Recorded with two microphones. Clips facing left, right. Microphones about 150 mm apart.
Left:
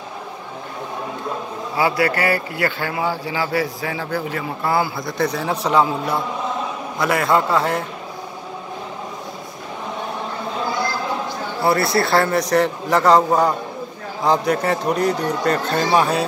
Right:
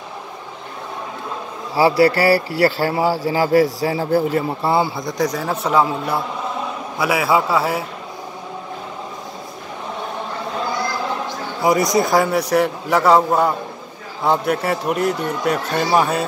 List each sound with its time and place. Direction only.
1.8 s a man's voice: 30° right (ahead or behind)
5.3 s speech: centre (ahead or behind)
11.6 s a man's voice: 15° right (ahead or behind)